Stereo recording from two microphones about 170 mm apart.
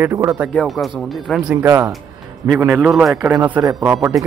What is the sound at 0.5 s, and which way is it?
Speech, 5° left (ahead or behind).